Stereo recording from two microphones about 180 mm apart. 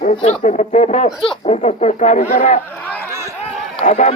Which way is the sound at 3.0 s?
15° right (ahead or behind).